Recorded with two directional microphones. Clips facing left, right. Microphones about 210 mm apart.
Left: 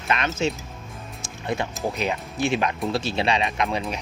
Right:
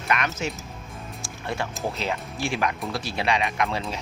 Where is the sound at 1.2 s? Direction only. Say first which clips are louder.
Left 3 dB; 20° left (ahead or behind).